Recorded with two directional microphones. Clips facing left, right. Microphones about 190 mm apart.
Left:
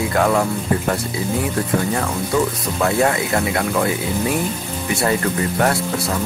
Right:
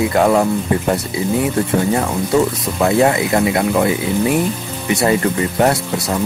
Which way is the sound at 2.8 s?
20° right (ahead or behind).